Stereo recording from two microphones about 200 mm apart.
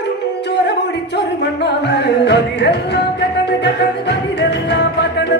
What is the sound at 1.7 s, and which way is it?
Music, 55° left (ahead or behind).